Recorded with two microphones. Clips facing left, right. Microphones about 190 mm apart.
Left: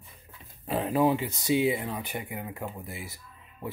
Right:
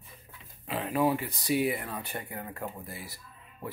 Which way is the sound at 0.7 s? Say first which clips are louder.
Left 3 dB; 35° left (ahead or behind).